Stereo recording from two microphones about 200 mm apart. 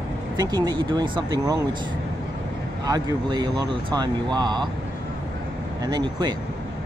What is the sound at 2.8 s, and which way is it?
Speech, 20° right (ahead or behind).